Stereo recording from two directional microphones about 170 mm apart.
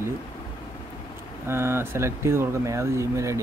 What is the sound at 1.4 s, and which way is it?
Speech, 15° right (ahead or behind).